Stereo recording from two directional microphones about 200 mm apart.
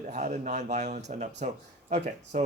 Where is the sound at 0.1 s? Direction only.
40° right (ahead or behind).